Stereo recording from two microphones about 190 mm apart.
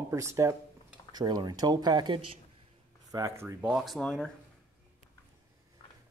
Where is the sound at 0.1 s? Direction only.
15° right (ahead or behind).